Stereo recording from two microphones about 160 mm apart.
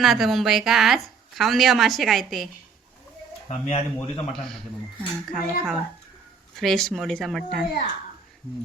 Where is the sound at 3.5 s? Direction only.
40° left (ahead or behind).